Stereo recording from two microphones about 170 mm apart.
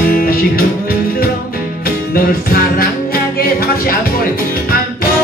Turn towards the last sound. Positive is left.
turn(degrees=60)  # may be behind; listen again after turning